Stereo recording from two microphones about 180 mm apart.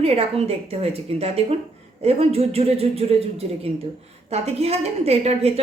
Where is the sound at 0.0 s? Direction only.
35° right (ahead or behind).